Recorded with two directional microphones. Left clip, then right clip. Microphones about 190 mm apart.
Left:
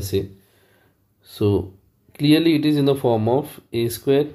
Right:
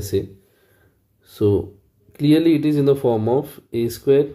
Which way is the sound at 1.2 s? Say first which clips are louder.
Right 2 dB; 15° right (ahead or behind).